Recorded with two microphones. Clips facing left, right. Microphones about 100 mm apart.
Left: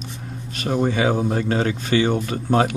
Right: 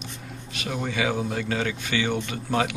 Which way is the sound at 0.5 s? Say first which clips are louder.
Left 7 dB; 40° left (ahead or behind).